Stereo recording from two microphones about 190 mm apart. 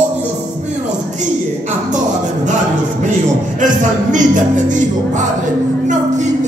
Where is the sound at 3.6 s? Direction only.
40° right (ahead or behind).